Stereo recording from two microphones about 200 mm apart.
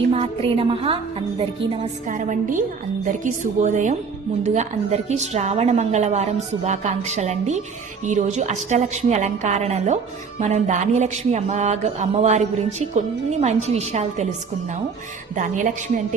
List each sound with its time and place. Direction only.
0.1 s a woman's voice: 30° right (ahead or behind)
15.4 s a woman's voice: 40° right (ahead or behind)